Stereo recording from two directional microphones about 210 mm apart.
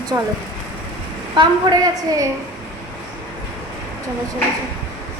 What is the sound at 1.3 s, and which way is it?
Speech, 20° right (ahead or behind).